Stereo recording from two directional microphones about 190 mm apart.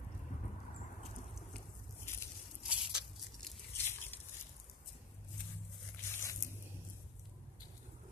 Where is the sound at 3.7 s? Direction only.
10° left (ahead or behind).